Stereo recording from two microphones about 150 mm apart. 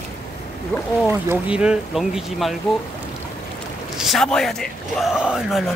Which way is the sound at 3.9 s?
Centre (ahead or behind).